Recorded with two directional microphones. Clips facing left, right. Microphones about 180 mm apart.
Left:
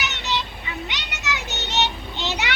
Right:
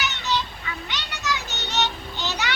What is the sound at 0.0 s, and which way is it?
Music, 20° left (ahead or behind).